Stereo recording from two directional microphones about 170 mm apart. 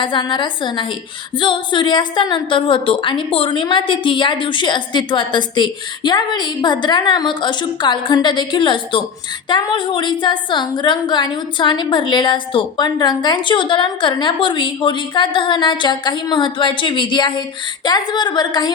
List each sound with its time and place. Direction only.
0.0 s a woman's voice: 30° left (ahead or behind)